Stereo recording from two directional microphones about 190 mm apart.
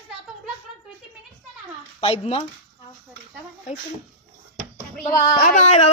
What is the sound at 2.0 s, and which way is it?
Speech, 30° left (ahead or behind).